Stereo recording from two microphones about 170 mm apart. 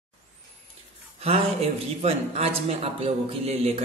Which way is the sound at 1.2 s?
35° right (ahead or behind).